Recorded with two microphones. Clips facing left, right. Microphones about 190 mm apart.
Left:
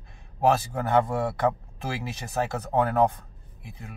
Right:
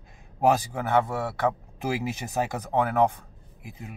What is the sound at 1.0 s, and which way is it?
Speech, 5° right (ahead or behind).